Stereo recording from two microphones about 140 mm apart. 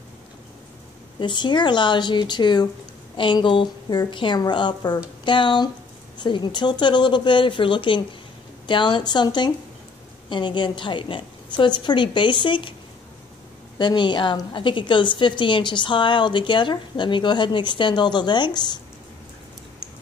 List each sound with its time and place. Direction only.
1.2 s a woman's voice: 35° left (ahead or behind)
13.7 s a woman's voice: 35° left (ahead or behind)